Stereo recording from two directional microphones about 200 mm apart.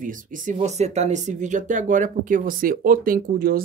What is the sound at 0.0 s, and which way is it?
Speech, 40° right (ahead or behind).